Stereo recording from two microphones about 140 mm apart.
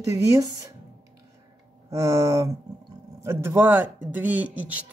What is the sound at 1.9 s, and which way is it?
Speech, 20° right (ahead or behind).